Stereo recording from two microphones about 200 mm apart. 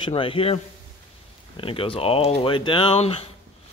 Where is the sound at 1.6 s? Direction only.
25° left (ahead or behind).